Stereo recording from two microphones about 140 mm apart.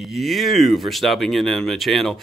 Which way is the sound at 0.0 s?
Centre (ahead or behind).